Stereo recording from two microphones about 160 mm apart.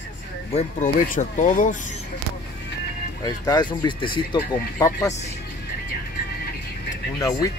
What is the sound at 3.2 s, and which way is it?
Speech, 25° left (ahead or behind).